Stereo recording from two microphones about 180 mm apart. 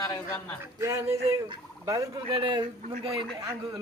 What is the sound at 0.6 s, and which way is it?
Speech, 15° right (ahead or behind).